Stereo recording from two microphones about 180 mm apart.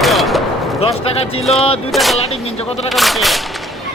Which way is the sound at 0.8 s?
35° left (ahead or behind).